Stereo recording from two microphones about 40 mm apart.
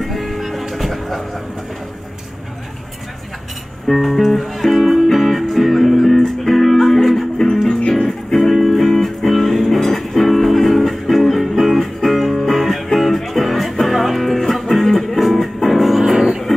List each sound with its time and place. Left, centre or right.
0.0 s music: centre
3.8 s music: centre
7.3 s music: centre
8.3 s music: centre